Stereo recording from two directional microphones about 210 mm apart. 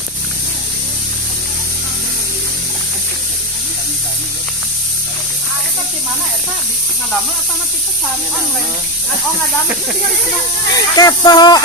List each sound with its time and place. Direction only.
10.7 s speech: 20° left (ahead or behind)